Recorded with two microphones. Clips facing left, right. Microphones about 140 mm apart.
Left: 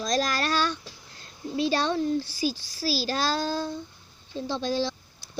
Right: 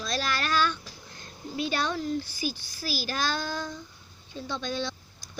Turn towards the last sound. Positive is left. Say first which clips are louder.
# left 5 dB
turn(degrees=30)  # may be behind; listen again after turning